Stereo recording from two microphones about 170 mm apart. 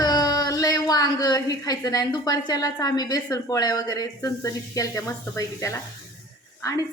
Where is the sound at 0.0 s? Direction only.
25° left (ahead or behind).